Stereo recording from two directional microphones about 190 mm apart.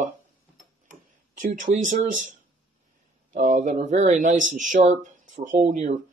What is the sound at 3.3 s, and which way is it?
Speech, 40° right (ahead or behind).